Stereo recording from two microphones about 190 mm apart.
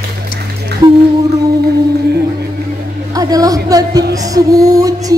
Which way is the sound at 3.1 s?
20° right (ahead or behind).